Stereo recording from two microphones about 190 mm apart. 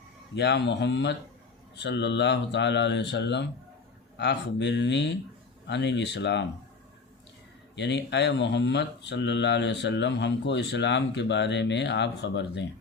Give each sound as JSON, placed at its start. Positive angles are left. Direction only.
{"t": 0.3, "sound": "speech", "side_deg": 65}
{"t": 7.8, "sound": "speech", "side_deg": 65}